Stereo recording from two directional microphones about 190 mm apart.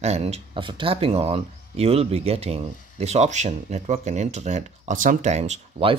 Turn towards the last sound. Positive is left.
turn(degrees=-30)  # may be behind; listen again after turning